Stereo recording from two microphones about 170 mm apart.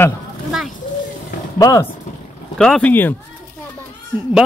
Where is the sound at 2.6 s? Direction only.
5° left (ahead or behind).